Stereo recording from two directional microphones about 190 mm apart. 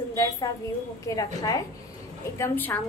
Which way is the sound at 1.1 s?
15° left (ahead or behind).